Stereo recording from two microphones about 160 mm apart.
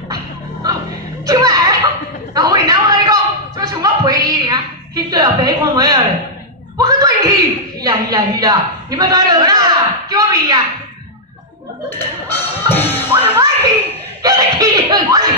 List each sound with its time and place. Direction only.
1.2 s music: 25° right (ahead or behind)
2.3 s a sound: 25° right (ahead or behind)
11.9 s music: 15° left (ahead or behind)
13.1 s music: 30° right (ahead or behind)
14.2 s laughter: 25° right (ahead or behind)